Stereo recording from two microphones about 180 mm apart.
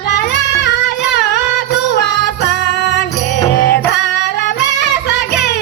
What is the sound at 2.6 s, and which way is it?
Music, 65° left (ahead or behind).